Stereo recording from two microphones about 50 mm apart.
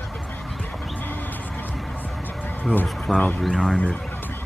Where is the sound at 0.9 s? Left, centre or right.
Left.